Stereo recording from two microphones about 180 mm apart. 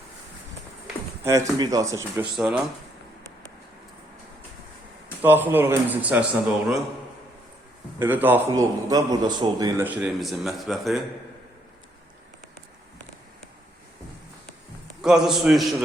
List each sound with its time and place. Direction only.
1.2 s a man's voice: 15° right (ahead or behind)
2.4 s a man's voice: 5° right (ahead or behind)
5.2 s a man's voice: 10° right (ahead or behind)
7.9 s a man's voice: 10° right (ahead or behind)
15.0 s a man's voice: centre (ahead or behind)